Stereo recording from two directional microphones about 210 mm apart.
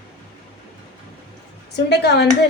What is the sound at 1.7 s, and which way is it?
Speech, 55° left (ahead or behind).